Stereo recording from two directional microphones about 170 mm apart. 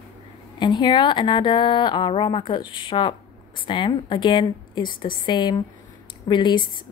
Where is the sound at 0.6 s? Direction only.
25° left (ahead or behind).